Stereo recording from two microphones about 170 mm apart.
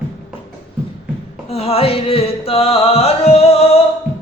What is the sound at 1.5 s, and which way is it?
Music, 35° left (ahead or behind).